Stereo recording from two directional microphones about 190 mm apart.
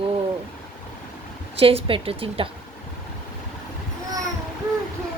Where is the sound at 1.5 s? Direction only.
30° right (ahead or behind).